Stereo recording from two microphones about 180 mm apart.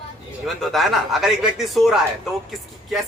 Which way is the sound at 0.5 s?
Centre (ahead or behind).